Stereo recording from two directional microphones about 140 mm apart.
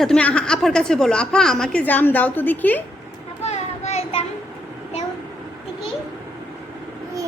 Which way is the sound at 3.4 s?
50° left (ahead or behind).